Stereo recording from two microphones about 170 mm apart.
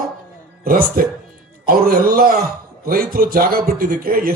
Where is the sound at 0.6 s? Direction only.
60° right (ahead or behind).